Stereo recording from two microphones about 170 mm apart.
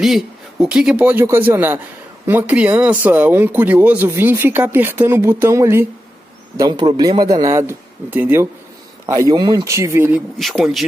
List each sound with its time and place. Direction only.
0.0 s a man's voice: centre (ahead or behind)
10.4 s speech: centre (ahead or behind)